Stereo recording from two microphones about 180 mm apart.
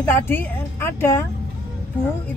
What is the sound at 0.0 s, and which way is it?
Speech, 10° left (ahead or behind).